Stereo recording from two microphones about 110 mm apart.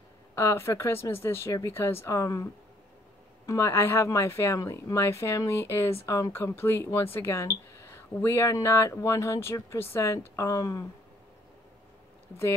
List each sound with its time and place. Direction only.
0.4 s speech: 25° left (ahead or behind)